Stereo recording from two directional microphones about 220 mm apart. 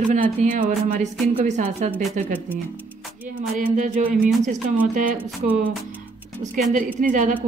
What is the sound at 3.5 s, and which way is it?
Speech, 35° right (ahead or behind).